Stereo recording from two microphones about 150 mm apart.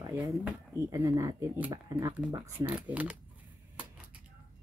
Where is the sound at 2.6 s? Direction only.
10° right (ahead or behind).